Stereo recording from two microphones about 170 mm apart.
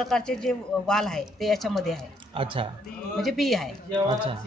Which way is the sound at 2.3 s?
30° right (ahead or behind).